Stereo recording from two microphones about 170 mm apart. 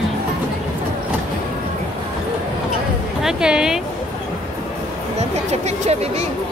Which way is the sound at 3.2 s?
5° right (ahead or behind).